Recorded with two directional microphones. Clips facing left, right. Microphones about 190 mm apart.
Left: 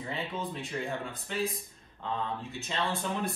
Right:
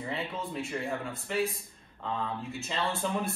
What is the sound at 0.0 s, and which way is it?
Speech, centre (ahead or behind).